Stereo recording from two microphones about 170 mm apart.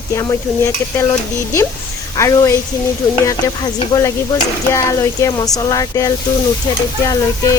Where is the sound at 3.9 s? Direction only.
25° left (ahead or behind).